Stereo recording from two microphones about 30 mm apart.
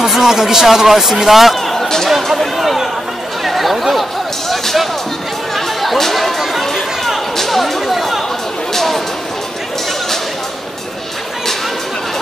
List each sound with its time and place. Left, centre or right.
0.1 s a man's voice: centre
2.5 s chatter: centre
4.5 s music: centre
7.3 s chatter: centre
8.7 s a sound: centre